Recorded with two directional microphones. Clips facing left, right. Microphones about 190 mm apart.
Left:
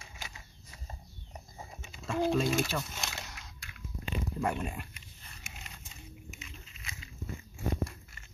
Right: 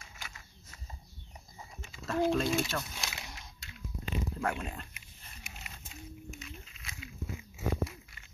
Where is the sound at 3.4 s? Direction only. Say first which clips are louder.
Even; 25° right (ahead or behind).